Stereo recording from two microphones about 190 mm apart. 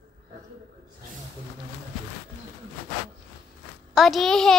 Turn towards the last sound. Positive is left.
turn(degrees=0)  # may be behind; listen again after turning